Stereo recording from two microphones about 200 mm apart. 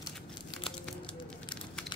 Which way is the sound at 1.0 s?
25° left (ahead or behind).